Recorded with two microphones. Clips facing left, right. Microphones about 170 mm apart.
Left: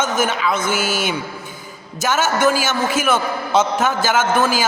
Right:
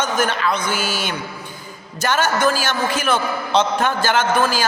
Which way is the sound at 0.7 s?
50° left (ahead or behind).